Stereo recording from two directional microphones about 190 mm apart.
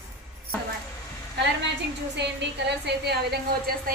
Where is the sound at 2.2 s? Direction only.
65° right (ahead or behind).